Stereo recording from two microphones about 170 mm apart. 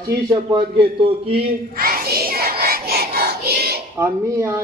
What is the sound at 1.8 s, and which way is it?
Child singing, 60° right (ahead or behind).